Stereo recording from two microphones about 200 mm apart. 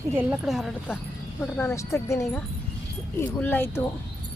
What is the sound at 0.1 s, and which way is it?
Speech, 10° right (ahead or behind).